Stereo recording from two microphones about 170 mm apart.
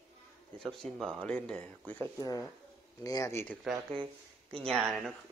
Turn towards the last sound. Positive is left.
turn(degrees=0)  # may be behind; listen again after turning